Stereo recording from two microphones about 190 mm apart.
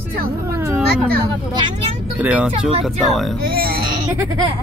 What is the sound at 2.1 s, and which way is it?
Speech, 5° right (ahead or behind).